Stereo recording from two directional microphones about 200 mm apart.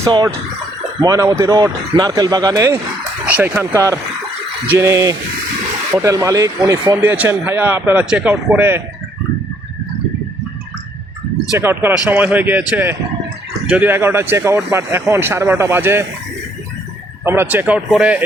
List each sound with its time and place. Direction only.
0.0 s speech: 15° right (ahead or behind)
11.5 s speech: 10° right (ahead or behind)
17.2 s speech: 10° right (ahead or behind)